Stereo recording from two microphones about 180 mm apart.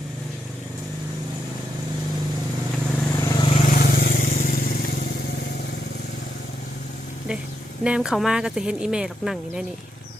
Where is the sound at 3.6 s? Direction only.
55° left (ahead or behind).